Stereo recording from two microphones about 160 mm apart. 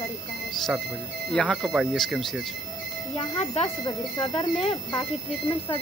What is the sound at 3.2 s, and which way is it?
Speech, 40° left (ahead or behind).